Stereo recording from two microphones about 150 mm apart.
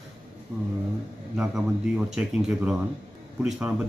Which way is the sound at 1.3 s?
5° right (ahead or behind).